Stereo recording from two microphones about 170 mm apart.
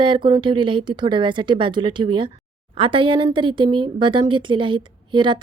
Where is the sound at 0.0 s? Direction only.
30° right (ahead or behind).